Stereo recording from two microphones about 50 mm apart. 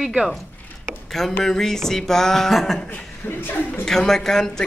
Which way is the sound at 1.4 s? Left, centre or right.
Centre.